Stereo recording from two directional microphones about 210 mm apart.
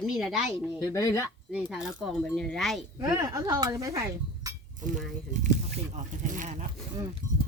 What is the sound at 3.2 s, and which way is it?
Speech, 15° right (ahead or behind).